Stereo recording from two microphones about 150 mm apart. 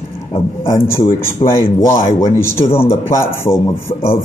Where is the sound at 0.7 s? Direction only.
15° left (ahead or behind).